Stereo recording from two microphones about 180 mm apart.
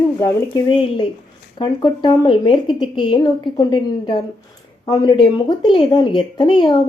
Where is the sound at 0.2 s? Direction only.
20° left (ahead or behind).